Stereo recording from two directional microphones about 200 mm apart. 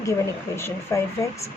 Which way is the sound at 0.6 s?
15° left (ahead or behind).